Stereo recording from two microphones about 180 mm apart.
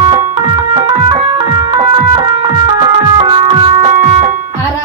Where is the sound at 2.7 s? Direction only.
25° right (ahead or behind).